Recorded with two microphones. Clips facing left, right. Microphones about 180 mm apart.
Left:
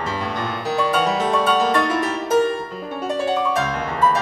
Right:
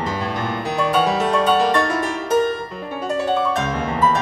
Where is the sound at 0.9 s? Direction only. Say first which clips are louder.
Right 4 dB; centre (ahead or behind).